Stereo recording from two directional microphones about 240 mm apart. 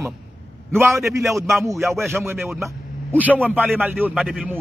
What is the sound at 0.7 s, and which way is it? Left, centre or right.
Speech, centre.